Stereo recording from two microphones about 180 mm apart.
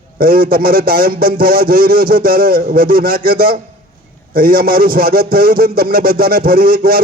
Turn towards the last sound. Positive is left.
turn(degrees=-55)  # may be behind; listen again after turning